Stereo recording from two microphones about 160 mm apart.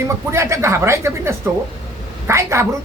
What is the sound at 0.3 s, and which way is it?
A man's voice, 15° right (ahead or behind).